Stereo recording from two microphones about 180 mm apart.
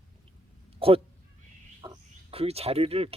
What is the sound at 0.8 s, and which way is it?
Speech, 30° right (ahead or behind).